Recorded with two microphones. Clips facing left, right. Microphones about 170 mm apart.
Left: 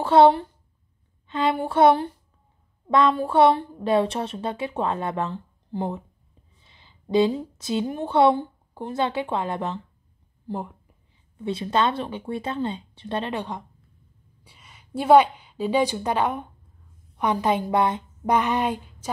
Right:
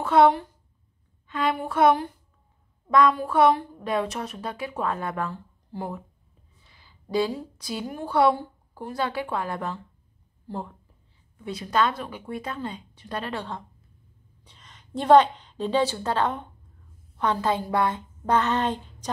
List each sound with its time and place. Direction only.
0.0 s a woman's voice: 30° left (ahead or behind)
11.3 s a woman's voice: 25° left (ahead or behind)